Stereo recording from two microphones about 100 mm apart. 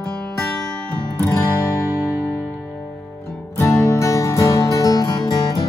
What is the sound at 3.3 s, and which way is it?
Music, 30° left (ahead or behind).